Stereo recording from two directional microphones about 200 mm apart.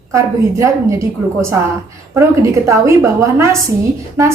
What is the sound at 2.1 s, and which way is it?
A woman's voice, 15° right (ahead or behind).